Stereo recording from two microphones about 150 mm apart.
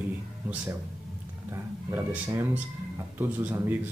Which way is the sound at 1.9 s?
15° right (ahead or behind).